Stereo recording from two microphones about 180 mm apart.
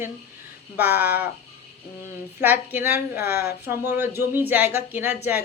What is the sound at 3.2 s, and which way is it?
Speech, 60° left (ahead or behind).